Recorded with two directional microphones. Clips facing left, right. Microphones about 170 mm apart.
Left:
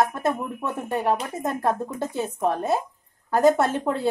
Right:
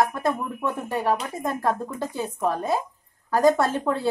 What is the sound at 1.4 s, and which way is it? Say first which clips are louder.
Speech: left 1 dB; 20° left (ahead or behind).